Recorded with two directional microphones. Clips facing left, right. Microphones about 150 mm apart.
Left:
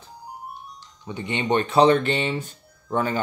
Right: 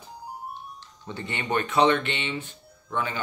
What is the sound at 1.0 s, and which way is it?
Speech, 15° left (ahead or behind).